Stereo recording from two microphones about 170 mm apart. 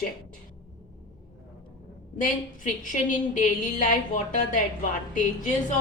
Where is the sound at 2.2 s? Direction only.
50° left (ahead or behind).